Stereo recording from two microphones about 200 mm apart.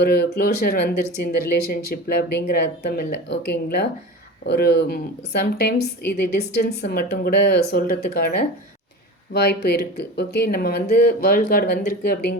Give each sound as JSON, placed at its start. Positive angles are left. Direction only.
{"t": 0.0, "sound": "speech", "side_deg": 50}
{"t": 9.3, "sound": "speech", "side_deg": 55}